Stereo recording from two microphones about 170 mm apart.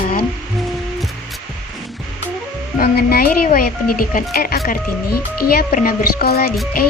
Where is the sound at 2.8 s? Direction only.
65° left (ahead or behind).